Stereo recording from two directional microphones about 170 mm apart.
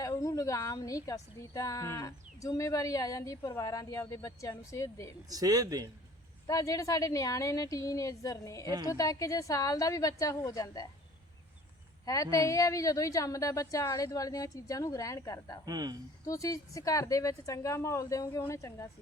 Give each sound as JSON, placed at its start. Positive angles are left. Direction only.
{"t": 0.0, "sound": "a woman's voice", "side_deg": 20}
{"t": 5.3, "sound": "speech", "side_deg": -20}
{"t": 6.5, "sound": "a woman's voice", "side_deg": 20}
{"t": 8.6, "sound": "speech", "side_deg": -25}
{"t": 8.9, "sound": "a woman's voice", "side_deg": 20}
{"t": 12.0, "sound": "a woman's voice", "side_deg": 20}
{"t": 15.6, "sound": "speech", "side_deg": -20}
{"t": 16.2, "sound": "a woman's voice", "side_deg": 20}